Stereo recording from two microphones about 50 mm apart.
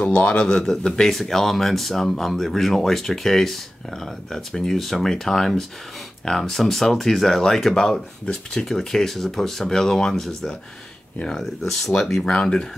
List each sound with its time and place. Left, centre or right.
0.0 s a man's voice: left